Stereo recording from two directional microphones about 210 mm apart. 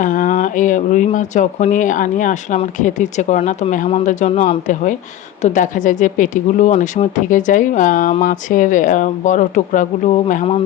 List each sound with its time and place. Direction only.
0.0 s speech: 40° left (ahead or behind)